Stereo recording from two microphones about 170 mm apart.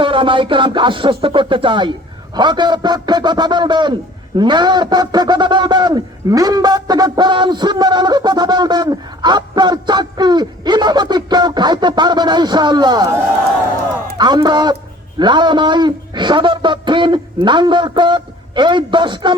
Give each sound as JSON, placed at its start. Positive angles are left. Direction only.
{"t": 0.0, "sound": "a man's voice", "side_deg": -30}
{"t": 14.2, "sound": "a man's voice", "side_deg": -25}